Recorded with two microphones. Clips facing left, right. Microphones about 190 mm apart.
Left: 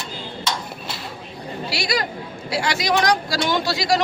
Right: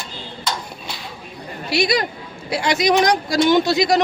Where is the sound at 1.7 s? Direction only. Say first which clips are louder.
Right 6 dB; 20° right (ahead or behind).